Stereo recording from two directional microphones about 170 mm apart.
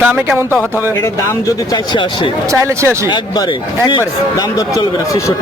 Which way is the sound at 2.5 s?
15° right (ahead or behind).